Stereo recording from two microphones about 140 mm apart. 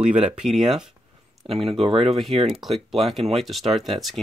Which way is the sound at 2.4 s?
Centre (ahead or behind).